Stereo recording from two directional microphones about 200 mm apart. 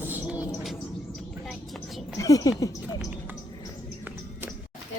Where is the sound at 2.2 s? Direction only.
15° left (ahead or behind).